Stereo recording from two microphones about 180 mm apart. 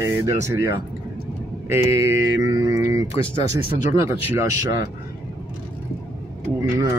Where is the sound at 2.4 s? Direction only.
20° right (ahead or behind).